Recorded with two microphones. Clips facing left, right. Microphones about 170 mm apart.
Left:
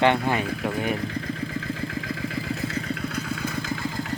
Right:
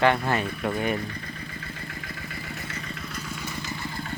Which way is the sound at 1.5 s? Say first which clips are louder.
Left 9 dB; 90° left.